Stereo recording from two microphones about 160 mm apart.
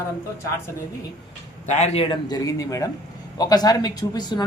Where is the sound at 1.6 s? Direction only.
45° left (ahead or behind).